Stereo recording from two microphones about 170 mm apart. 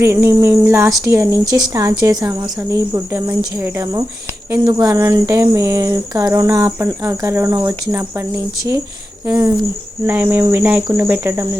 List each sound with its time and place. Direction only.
0.0 s speech: 15° right (ahead or behind)
4.5 s a sound: 20° right (ahead or behind)
9.2 s speech: 10° right (ahead or behind)